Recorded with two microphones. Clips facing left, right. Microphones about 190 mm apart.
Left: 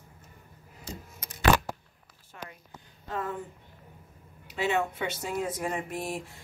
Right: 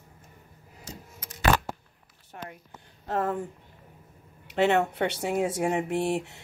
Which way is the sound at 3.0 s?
60° right (ahead or behind).